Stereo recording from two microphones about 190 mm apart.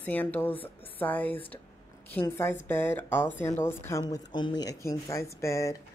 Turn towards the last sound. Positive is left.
turn(degrees=15)  # may be behind; listen again after turning